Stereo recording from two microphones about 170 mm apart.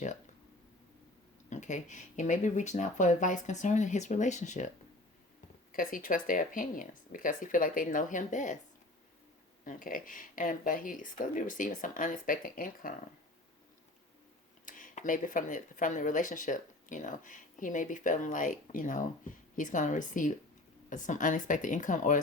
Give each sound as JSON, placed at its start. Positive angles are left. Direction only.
{"t": 1.5, "sound": "speech", "side_deg": 45}
{"t": 5.7, "sound": "speech", "side_deg": 55}
{"t": 9.6, "sound": "speech", "side_deg": 55}
{"t": 14.6, "sound": "speech", "side_deg": 50}